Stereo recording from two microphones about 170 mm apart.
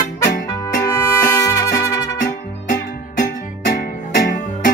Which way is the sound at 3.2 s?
50° left (ahead or behind).